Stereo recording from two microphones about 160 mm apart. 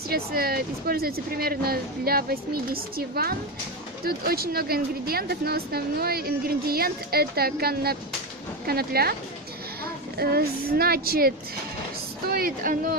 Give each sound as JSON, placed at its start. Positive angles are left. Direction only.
{"t": 0.1, "sound": "speech", "side_deg": -70}
{"t": 10.1, "sound": "speech", "side_deg": -75}